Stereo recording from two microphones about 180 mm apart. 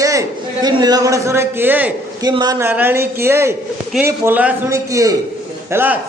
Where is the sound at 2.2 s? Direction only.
20° right (ahead or behind).